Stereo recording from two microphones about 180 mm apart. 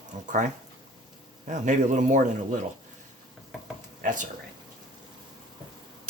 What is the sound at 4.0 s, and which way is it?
Speech, 45° right (ahead or behind).